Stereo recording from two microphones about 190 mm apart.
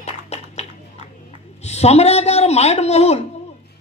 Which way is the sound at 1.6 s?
35° left (ahead or behind).